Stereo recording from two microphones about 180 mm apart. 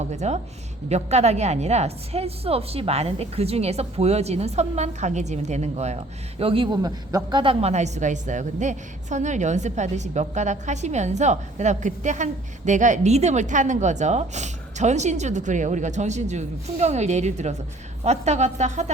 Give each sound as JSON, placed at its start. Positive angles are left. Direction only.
{"t": 0.0, "sound": "a woman's voice", "side_deg": -40}